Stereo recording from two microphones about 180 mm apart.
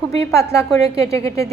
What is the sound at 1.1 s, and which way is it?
Speech, 15° left (ahead or behind).